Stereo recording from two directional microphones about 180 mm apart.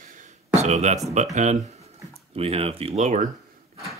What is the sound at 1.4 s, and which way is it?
Speech, 40° right (ahead or behind).